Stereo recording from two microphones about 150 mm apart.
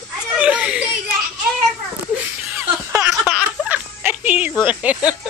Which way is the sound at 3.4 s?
10° right (ahead or behind).